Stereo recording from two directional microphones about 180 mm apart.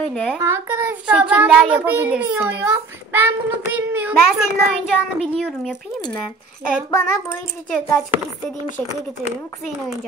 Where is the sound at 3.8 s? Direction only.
10° right (ahead or behind).